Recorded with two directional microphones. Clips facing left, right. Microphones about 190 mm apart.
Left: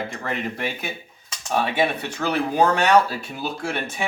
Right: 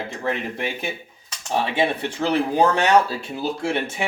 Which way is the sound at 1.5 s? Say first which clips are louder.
Even; 25° right (ahead or behind).